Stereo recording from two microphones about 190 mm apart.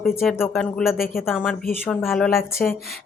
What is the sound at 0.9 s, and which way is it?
Speech, 50° left (ahead or behind).